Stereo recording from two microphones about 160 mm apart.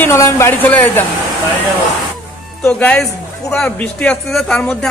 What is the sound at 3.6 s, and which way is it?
Speech, 5° left (ahead or behind).